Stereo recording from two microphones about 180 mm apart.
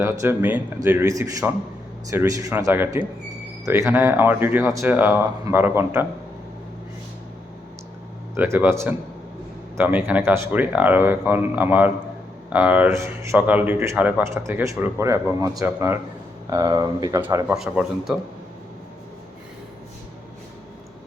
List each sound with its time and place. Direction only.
0.0 s speech: 15° right (ahead or behind)
8.4 s speech: 10° right (ahead or behind)
17.2 s speech: 10° right (ahead or behind)